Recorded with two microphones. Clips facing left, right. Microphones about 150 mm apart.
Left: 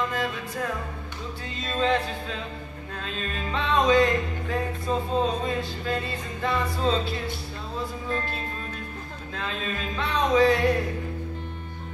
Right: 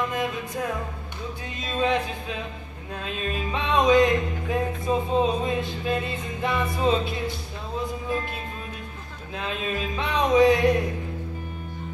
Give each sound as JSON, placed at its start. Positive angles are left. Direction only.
{"t": 0.1, "sound": "music", "side_deg": -20}
{"t": 4.8, "sound": "music", "side_deg": -10}
{"t": 5.2, "sound": "music", "side_deg": -20}